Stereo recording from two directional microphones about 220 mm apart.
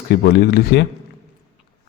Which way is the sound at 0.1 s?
45° left (ahead or behind).